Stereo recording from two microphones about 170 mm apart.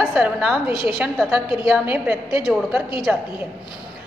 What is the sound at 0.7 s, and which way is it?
Speech, 30° left (ahead or behind).